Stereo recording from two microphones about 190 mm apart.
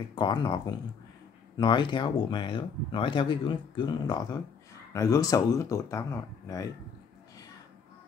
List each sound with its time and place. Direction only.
0.1 s speech: 25° left (ahead or behind)